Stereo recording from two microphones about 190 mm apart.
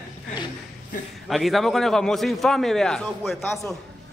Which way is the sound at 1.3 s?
Centre (ahead or behind).